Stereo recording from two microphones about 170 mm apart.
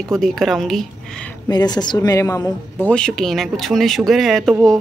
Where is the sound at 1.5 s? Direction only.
25° left (ahead or behind).